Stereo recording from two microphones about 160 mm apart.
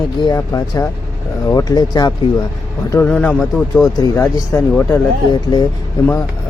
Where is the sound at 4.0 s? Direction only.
20° left (ahead or behind).